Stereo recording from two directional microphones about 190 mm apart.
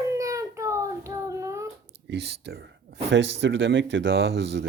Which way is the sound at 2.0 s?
60° right (ahead or behind).